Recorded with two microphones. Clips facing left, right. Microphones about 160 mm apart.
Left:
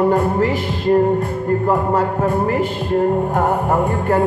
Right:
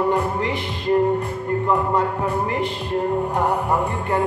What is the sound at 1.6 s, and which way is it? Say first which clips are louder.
Speech: left 1 dB; 45° left (ahead or behind).